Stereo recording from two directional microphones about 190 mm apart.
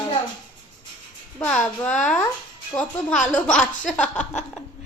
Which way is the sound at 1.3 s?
10° left (ahead or behind).